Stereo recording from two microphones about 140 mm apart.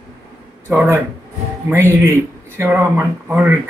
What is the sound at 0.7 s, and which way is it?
Speech, 15° right (ahead or behind).